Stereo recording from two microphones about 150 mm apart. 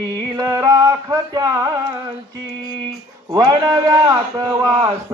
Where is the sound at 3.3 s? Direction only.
25° right (ahead or behind).